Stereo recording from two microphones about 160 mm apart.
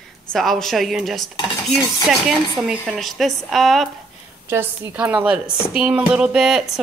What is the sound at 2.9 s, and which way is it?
A woman's voice, centre (ahead or behind).